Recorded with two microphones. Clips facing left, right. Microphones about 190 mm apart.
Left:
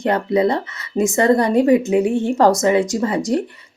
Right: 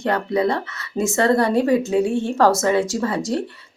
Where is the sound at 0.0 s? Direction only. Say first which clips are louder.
Left 3 dB; 20° left (ahead or behind).